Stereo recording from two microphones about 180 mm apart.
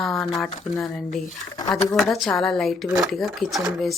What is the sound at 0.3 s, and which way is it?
Speech, centre (ahead or behind).